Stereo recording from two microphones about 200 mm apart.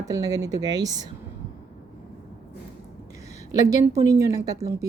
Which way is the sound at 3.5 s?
15° right (ahead or behind).